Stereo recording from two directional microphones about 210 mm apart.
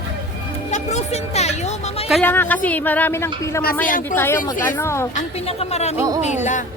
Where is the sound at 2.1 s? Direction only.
5° left (ahead or behind).